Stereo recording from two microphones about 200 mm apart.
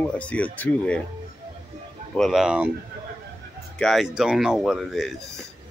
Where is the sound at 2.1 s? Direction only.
Centre (ahead or behind).